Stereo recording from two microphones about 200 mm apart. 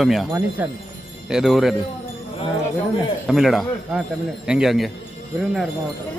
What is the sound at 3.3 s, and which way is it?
Speech, centre (ahead or behind).